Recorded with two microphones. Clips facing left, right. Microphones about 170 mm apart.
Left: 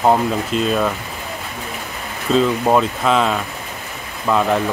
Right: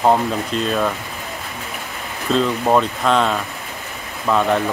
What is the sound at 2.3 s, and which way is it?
Speech, 5° left (ahead or behind).